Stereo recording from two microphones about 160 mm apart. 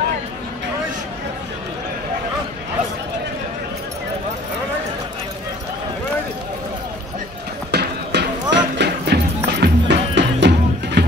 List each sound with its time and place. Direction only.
7.7 s clip-clop: 90° right